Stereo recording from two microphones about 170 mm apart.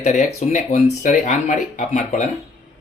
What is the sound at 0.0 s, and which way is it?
Speech, 45° left (ahead or behind).